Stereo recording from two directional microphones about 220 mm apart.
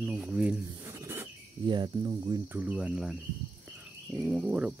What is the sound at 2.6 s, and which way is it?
Speech, 5° right (ahead or behind).